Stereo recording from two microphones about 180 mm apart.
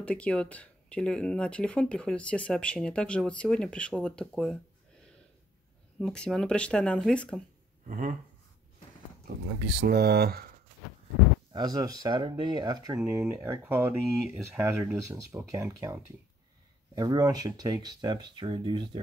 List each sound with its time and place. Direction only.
0.0 s speech: 5° left (ahead or behind)
5.9 s speech: 5° left (ahead or behind)
7.9 s speech: 45° right (ahead or behind)
9.8 s speech: 60° right (ahead or behind)
11.5 s speech: 20° right (ahead or behind)